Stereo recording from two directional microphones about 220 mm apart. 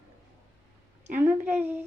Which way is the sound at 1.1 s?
10° right (ahead or behind).